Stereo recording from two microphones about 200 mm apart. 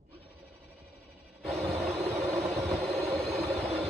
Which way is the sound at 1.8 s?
Centre (ahead or behind).